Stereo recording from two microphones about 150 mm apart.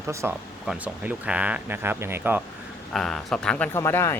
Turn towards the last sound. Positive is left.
turn(degrees=15)  # may be behind; listen again after turning